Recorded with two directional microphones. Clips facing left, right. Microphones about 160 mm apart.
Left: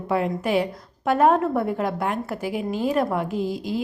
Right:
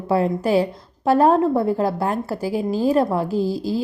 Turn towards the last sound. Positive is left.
turn(degrees=-35)  # may be behind; listen again after turning